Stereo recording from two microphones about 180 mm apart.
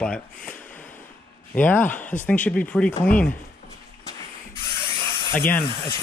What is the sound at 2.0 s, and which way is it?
Speech, 45° left (ahead or behind).